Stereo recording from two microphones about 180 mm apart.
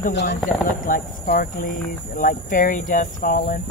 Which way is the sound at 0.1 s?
75° left (ahead or behind).